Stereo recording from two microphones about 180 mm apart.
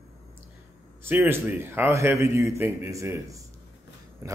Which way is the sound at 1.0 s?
10° right (ahead or behind).